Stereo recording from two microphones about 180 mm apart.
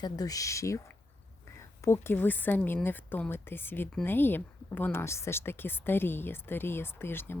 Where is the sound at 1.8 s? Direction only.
15° left (ahead or behind).